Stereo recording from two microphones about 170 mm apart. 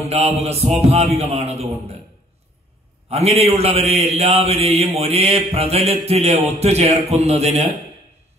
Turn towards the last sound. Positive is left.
turn(degrees=-40)  # may be behind; listen again after turning